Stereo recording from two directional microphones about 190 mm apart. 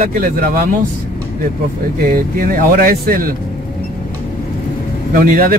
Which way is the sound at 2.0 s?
50° right (ahead or behind).